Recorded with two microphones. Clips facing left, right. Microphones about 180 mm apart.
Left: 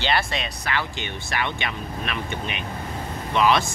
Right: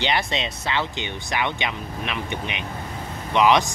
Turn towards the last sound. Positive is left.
turn(degrees=-15)  # may be behind; listen again after turning